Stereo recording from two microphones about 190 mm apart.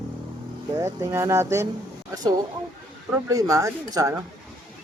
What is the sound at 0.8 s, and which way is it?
Speech, 15° right (ahead or behind).